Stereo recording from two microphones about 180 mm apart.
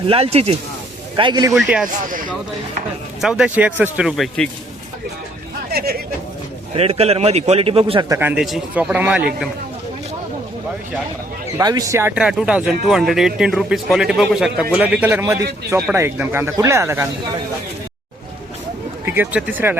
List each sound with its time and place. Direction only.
0.1 s a man's voice: 35° right (ahead or behind)
1.5 s a man's voice: 5° right (ahead or behind)
3.2 s a man's voice: 5° right (ahead or behind)
5.7 s speech: 55° right (ahead or behind)
6.7 s a man's voice: 35° right (ahead or behind)
8.1 s a man's voice: 10° right (ahead or behind)
11.5 s a man's voice: 20° right (ahead or behind)
19.0 s a man's voice: 10° right (ahead or behind)